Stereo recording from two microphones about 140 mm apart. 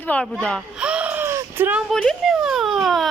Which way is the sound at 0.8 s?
10° right (ahead or behind).